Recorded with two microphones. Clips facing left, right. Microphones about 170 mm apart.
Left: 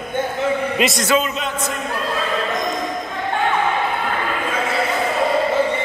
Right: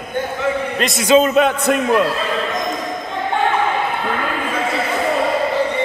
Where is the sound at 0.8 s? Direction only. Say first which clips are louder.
Left 1 dB; centre (ahead or behind).